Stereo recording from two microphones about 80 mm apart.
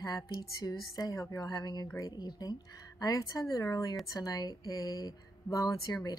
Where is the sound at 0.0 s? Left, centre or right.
Left.